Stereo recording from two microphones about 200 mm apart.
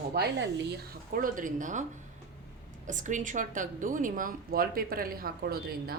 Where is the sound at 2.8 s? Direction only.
40° right (ahead or behind).